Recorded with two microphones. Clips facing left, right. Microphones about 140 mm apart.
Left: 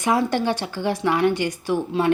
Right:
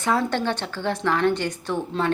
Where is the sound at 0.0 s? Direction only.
15° left (ahead or behind).